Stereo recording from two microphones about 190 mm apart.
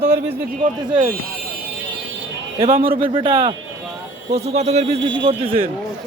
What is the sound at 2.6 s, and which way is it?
A man's voice, 30° right (ahead or behind).